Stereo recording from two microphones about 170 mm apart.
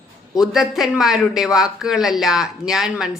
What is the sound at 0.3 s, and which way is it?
A woman's voice, centre (ahead or behind).